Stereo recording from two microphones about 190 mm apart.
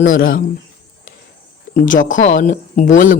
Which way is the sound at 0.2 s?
50° left (ahead or behind).